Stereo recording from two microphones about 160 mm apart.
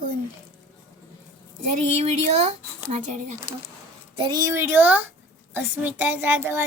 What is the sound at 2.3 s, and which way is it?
Speech, 40° right (ahead or behind).